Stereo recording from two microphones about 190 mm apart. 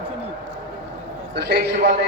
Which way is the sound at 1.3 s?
60° right (ahead or behind).